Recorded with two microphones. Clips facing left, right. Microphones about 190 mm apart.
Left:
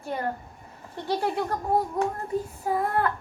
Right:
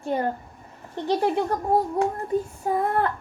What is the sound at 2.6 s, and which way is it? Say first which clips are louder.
Speech: right 1 dB; 30° right (ahead or behind).